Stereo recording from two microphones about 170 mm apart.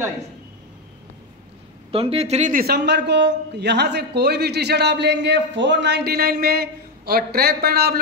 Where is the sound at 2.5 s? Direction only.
60° right (ahead or behind).